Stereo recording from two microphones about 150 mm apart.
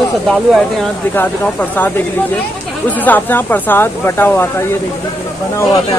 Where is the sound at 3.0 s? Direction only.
10° left (ahead or behind).